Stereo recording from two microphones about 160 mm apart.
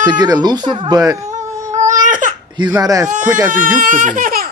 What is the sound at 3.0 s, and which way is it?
Speech, 55° right (ahead or behind).